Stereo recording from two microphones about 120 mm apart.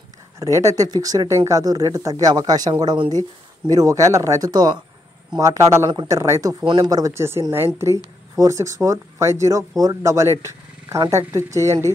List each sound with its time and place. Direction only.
0.4 s speech: 25° right (ahead or behind)
6.6 s speech: 40° right (ahead or behind)
6.9 s speech: 25° right (ahead or behind)